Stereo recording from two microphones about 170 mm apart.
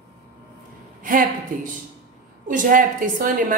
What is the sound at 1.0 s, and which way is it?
Speech, 50° right (ahead or behind).